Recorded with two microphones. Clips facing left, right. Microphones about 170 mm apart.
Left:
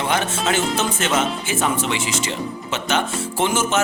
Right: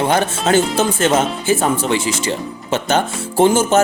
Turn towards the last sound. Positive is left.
turn(degrees=-35)  # may be behind; listen again after turning